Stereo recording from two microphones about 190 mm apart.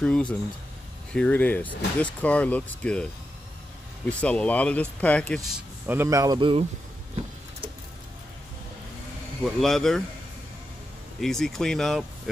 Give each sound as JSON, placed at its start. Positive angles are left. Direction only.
{"t": 0.0, "sound": "speech", "side_deg": 5}
{"t": 4.1, "sound": "speech", "side_deg": 5}
{"t": 5.9, "sound": "a man's voice", "side_deg": -15}
{"t": 9.4, "sound": "speech", "side_deg": 0}
{"t": 11.1, "sound": "speech", "side_deg": 0}